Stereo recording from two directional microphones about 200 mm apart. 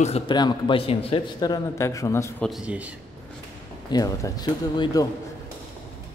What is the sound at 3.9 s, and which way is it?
A man's voice, 20° left (ahead or behind).